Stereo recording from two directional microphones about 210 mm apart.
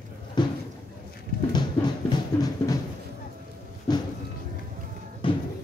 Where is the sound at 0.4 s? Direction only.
20° left (ahead or behind).